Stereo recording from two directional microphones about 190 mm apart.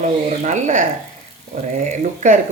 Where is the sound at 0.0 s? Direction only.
40° right (ahead or behind).